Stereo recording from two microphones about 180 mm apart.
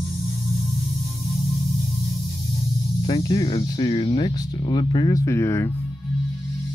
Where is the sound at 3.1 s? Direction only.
25° left (ahead or behind).